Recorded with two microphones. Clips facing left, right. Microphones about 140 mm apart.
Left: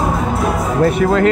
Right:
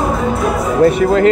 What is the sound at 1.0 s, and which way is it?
Speech, 50° left (ahead or behind).